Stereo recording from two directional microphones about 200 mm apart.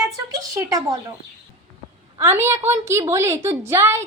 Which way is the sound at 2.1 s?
10° right (ahead or behind).